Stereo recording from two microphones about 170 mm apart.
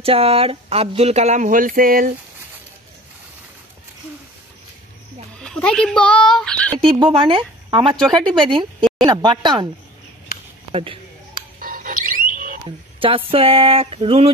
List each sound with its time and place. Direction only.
0.0 s speech: 35° right (ahead or behind); by 2.1 s 55° right (ahead or behind)
5.4 s speech: 5° left (ahead or behind)
6.8 s speech: 30° right (ahead or behind)
10.7 s speech: 35° right (ahead or behind)
11.6 s alarm: 55° right (ahead or behind)
12.6 s speech: 30° right (ahead or behind)